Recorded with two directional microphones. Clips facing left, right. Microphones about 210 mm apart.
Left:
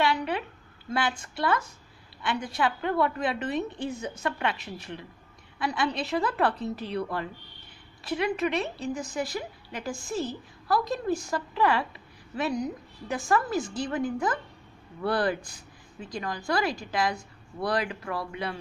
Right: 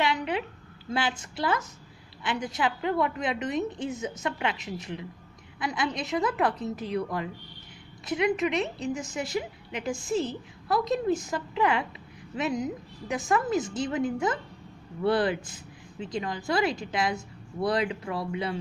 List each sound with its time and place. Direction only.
0.0 s a sound: 20° right (ahead or behind)
0.9 s a woman's voice: 25° right (ahead or behind)
3.9 s a woman's voice: 30° left (ahead or behind)
4.2 s a woman's voice: 15° right (ahead or behind)